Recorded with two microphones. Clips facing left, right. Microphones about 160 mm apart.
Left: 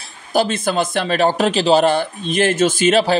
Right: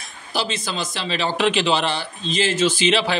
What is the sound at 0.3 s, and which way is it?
A man's voice, 50° left (ahead or behind).